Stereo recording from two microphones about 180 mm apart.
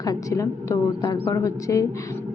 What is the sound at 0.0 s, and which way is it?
A woman's voice, 20° left (ahead or behind).